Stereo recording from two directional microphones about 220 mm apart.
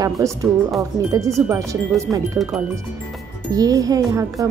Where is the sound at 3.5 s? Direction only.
15° right (ahead or behind).